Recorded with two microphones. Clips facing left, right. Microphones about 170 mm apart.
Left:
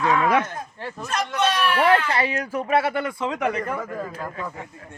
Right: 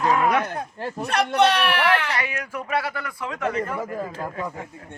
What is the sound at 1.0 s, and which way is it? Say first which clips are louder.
Speech: right 4 dB; 65° right (ahead or behind).